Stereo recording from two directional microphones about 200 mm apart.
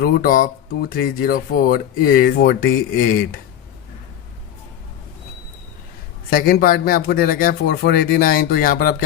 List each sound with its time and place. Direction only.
0.0 s speech: 45° left (ahead or behind)
6.3 s speech: 45° left (ahead or behind)